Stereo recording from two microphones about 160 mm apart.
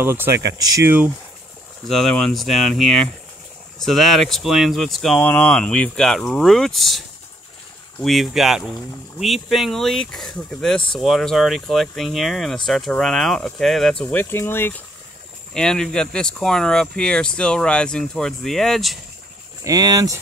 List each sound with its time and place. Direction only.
0.0 s speech: 15° right (ahead or behind)
1.9 s speech: 5° left (ahead or behind)
14.0 s speech: 15° left (ahead or behind)
15.5 s speech: 5° left (ahead or behind)
19.6 s speech: 25° right (ahead or behind)